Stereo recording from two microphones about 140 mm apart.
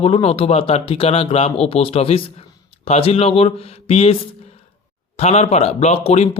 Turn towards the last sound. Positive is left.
turn(degrees=50)  # may be behind; listen again after turning